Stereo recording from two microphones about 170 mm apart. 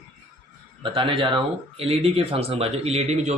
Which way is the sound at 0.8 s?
30° right (ahead or behind).